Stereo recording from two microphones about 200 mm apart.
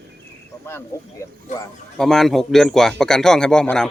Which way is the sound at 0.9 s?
15° left (ahead or behind).